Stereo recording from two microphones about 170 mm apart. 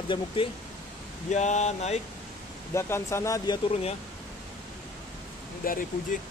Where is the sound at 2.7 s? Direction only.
15° left (ahead or behind).